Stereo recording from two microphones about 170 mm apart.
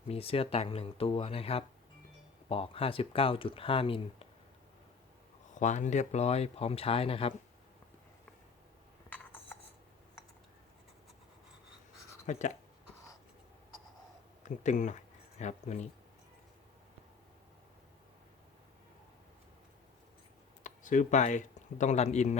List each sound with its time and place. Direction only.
0.1 s speech: 35° left (ahead or behind)
5.5 s speech: 45° left (ahead or behind)
12.2 s speech: 45° left (ahead or behind)
14.4 s speech: 45° left (ahead or behind)
20.7 s speech: 50° left (ahead or behind)